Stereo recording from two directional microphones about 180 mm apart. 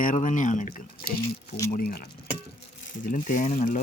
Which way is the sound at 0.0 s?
45° left (ahead or behind).